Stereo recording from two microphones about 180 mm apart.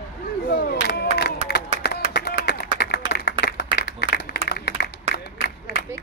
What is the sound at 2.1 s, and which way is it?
Clapping, 60° left (ahead or behind).